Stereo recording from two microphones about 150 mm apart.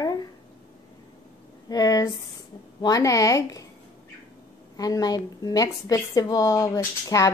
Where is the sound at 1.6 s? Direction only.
25° left (ahead or behind).